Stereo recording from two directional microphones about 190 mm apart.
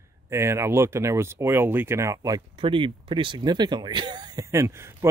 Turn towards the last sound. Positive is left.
turn(degrees=-15)  # may be behind; listen again after turning